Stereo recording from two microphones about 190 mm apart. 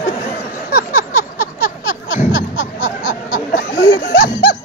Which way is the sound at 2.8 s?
45° left (ahead or behind).